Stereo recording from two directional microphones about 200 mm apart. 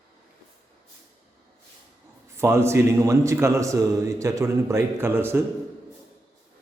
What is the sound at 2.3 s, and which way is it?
A man's voice, 15° right (ahead or behind).